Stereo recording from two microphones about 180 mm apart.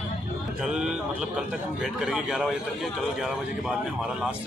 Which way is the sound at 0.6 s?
5° right (ahead or behind).